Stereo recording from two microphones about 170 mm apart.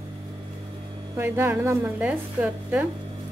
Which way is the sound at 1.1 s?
15° right (ahead or behind).